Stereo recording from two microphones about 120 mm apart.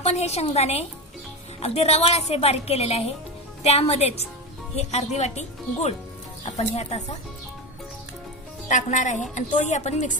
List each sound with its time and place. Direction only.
0.0 s a woman's voice: 65° left (ahead or behind)
8.6 s a woman's voice: 90° left